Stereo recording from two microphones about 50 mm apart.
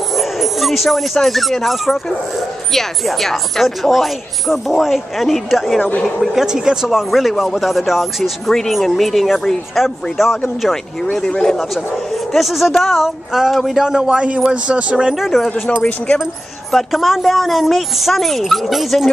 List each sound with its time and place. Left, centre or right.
0.1 s speech: centre
6.2 s speech: centre
11.0 s speech: centre
11.4 s speech: centre; by 15.1 s right
15.1 s speech: centre
15.5 s speech: left
16.7 s speech: centre